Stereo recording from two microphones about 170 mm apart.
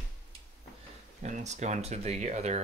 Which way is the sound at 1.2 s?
45° right (ahead or behind).